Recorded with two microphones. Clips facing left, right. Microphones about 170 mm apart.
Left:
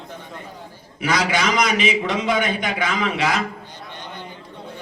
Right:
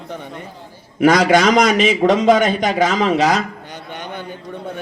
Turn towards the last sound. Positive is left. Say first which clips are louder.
# right 6 dB
turn(degrees=-40)  # may be behind; listen again after turning